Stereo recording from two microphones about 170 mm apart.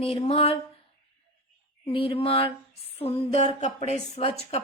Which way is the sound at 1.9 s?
30° left (ahead or behind).